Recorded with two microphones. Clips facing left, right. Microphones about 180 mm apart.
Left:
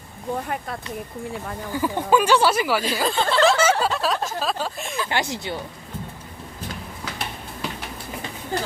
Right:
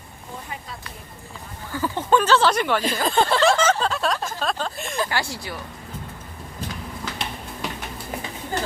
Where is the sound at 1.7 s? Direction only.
15° left (ahead or behind).